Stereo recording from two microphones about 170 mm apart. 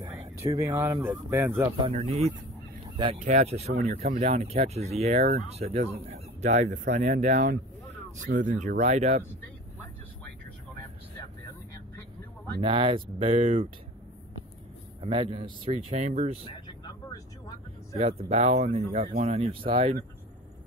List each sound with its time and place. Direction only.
0.0 s a sound: 15° right (ahead or behind)
1.0 s speech: 15° right (ahead or behind)
1.8 s speech: 35° right (ahead or behind)
12.5 s speech: 30° right (ahead or behind)
15.0 s speech: 30° right (ahead or behind)
16.4 s vehicle: 25° left (ahead or behind)
18.3 s speech: 40° right (ahead or behind)
19.2 s speech: 40° right (ahead or behind)